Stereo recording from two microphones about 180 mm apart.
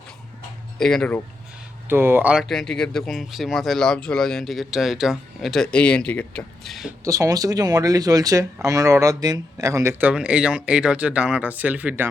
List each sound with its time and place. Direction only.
0.8 s speech: 5° left (ahead or behind)
1.9 s speech: 10° right (ahead or behind)
7.0 s speech: 20° right (ahead or behind)